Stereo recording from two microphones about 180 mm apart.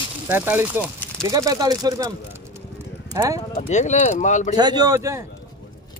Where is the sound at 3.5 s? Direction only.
40° left (ahead or behind).